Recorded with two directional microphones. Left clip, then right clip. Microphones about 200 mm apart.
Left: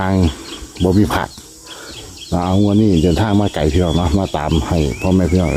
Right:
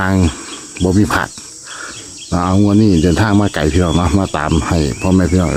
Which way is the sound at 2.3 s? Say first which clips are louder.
Right 2 dB; 15° right (ahead or behind).